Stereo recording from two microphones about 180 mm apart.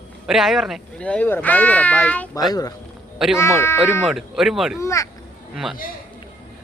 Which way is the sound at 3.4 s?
15° left (ahead or behind).